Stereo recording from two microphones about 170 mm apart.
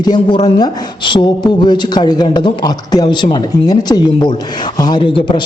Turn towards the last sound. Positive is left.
turn(degrees=30)  # may be behind; listen again after turning